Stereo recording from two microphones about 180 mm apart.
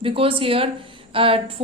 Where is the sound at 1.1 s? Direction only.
30° right (ahead or behind).